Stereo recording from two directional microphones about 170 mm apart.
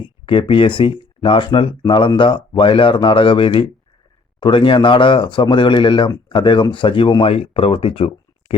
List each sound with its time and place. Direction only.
0.0 s speech: 30° left (ahead or behind)